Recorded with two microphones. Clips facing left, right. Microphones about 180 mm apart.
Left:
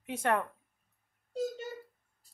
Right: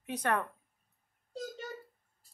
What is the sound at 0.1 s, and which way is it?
Speech, 25° left (ahead or behind).